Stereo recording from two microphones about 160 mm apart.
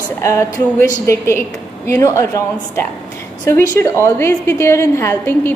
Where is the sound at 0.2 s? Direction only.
20° left (ahead or behind).